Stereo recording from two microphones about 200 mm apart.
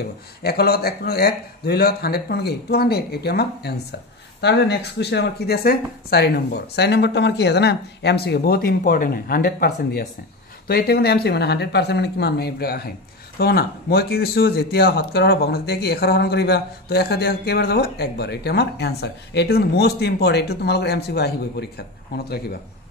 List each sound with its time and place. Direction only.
0.4 s speech: 50° left (ahead or behind)